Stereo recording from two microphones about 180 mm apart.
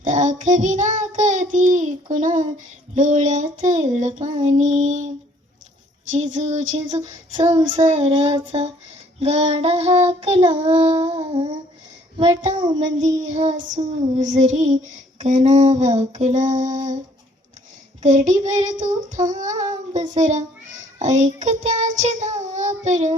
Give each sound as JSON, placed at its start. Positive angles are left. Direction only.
{"t": 0.0, "sound": "child singing", "side_deg": -45}
{"t": 6.1, "sound": "child singing", "side_deg": -45}
{"t": 11.1, "sound": "a child's voice", "side_deg": -30}
{"t": 13.0, "sound": "child singing", "side_deg": -40}
{"t": 18.0, "sound": "child singing", "side_deg": -45}